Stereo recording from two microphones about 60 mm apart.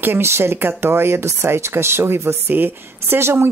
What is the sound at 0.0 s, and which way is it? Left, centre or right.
Speech, right.